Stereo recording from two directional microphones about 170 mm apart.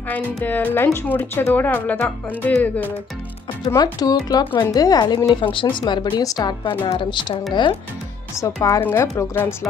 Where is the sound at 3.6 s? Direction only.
20° left (ahead or behind).